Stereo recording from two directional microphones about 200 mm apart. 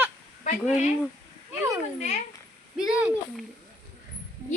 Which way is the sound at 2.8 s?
5° right (ahead or behind).